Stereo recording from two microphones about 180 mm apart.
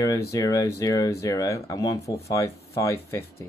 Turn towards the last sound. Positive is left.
turn(degrees=15)  # may be behind; listen again after turning